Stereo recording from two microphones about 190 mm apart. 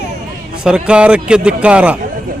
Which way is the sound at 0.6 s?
5° right (ahead or behind).